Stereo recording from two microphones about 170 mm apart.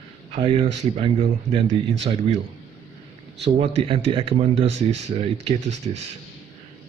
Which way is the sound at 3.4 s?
40° right (ahead or behind).